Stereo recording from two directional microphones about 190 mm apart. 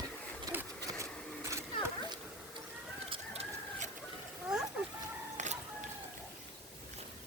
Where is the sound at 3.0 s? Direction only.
30° right (ahead or behind).